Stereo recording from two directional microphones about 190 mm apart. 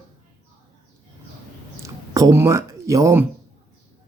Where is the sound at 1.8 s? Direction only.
20° right (ahead or behind).